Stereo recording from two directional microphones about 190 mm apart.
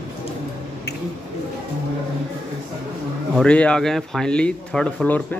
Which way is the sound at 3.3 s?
5° left (ahead or behind).